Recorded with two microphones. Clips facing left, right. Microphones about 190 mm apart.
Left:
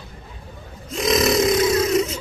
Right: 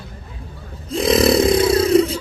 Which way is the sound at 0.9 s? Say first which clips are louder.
Right 4 dB; 30° right (ahead or behind).